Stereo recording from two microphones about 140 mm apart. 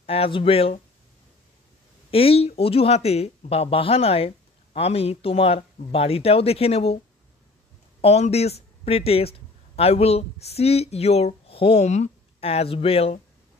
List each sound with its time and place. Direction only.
0.0 s speech: 45° left (ahead or behind)
2.0 s speech: 45° left (ahead or behind)
8.0 s speech: 50° left (ahead or behind)